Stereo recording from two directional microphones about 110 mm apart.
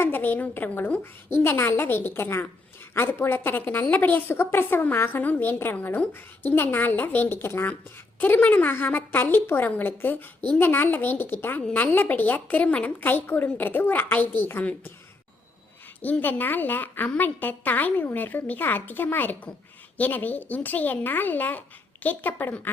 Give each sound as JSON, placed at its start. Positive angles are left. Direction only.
{"t": 0.0, "sound": "a woman's voice", "side_deg": 15}
{"t": 16.0, "sound": "a woman's voice", "side_deg": 15}